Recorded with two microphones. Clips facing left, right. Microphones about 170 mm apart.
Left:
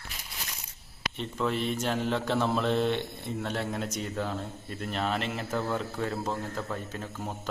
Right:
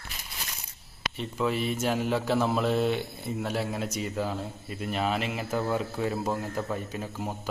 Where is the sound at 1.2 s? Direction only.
5° right (ahead or behind).